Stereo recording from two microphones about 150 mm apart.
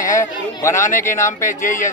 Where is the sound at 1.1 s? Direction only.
20° left (ahead or behind).